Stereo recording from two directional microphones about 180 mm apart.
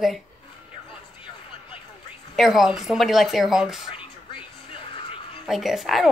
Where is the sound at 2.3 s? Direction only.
Centre (ahead or behind).